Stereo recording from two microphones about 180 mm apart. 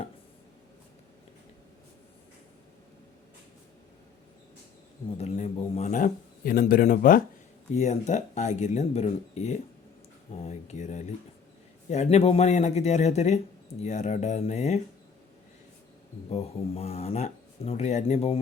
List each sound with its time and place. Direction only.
5.1 s a man's voice: 35° left (ahead or behind); by 7.2 s 50° left (ahead or behind)
7.8 s speech: 40° left (ahead or behind)
16.3 s speech: 35° left (ahead or behind)